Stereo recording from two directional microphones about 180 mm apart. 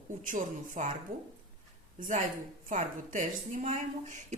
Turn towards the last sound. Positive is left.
turn(degrees=-45)  # may be behind; listen again after turning